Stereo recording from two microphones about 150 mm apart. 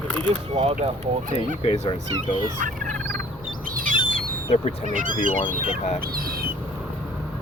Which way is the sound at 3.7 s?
70° right (ahead or behind).